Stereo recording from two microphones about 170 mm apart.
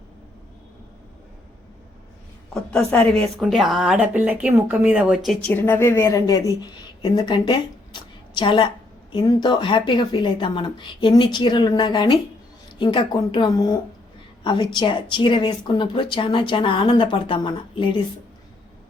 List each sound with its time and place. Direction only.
2.5 s speech: 5° left (ahead or behind)
5.5 s a woman's voice: 15° left (ahead or behind)